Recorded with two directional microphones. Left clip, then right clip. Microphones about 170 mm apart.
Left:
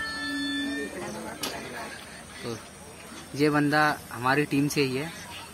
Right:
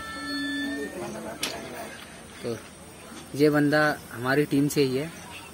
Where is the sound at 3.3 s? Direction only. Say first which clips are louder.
Right 2 dB; 15° right (ahead or behind).